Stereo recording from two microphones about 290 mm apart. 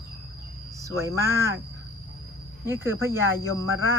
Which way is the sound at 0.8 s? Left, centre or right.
Centre.